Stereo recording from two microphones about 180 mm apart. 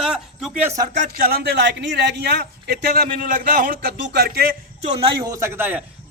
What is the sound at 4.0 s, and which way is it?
Speech, 70° right (ahead or behind).